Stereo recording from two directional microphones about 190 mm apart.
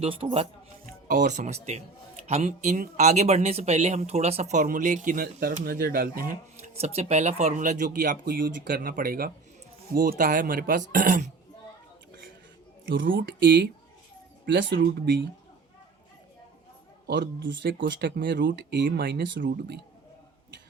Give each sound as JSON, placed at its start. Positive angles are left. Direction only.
{"t": 0.0, "sound": "speech", "side_deg": -30}
{"t": 1.0, "sound": "speech", "side_deg": -40}
{"t": 6.7, "sound": "speech", "side_deg": -35}
{"t": 12.8, "sound": "speech", "side_deg": -80}
{"t": 17.1, "sound": "speech", "side_deg": -70}